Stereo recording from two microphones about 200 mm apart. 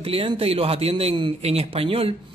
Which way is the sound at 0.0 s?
30° right (ahead or behind).